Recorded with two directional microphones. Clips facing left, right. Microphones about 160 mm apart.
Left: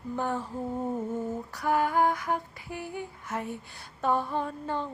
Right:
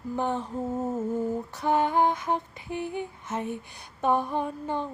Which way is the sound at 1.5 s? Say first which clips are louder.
Right 1 dB; 25° right (ahead or behind).